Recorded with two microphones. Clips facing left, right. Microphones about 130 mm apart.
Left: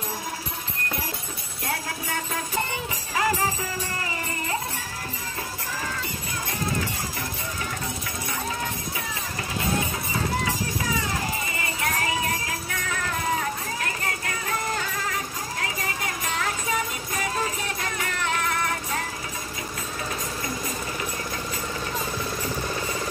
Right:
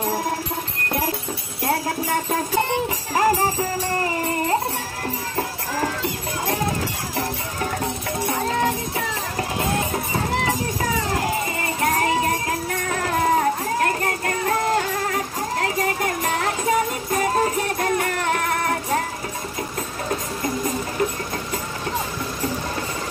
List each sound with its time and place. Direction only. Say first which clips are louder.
3.2 s music: right 6 dB; 40° right (ahead or behind)
8.9 s music: right 7 dB; 50° right (ahead or behind)